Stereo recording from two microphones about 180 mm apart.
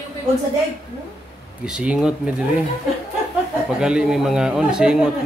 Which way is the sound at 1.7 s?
5° right (ahead or behind).